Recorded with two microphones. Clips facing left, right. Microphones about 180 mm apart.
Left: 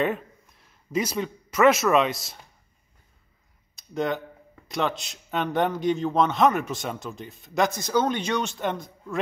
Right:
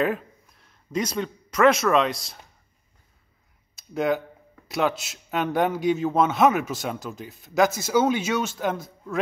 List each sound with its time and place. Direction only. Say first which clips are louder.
0.0 s speech: right 1 dB; centre (ahead or behind)
3.7 s a sound: right 3 dB; 5° right (ahead or behind)
4.6 s a man's voice: right 3 dB; 5° right (ahead or behind)